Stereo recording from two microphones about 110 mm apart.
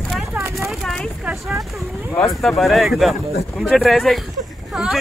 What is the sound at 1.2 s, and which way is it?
Speech, centre (ahead or behind).